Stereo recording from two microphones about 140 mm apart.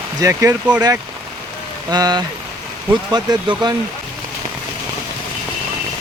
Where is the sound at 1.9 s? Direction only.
30° right (ahead or behind).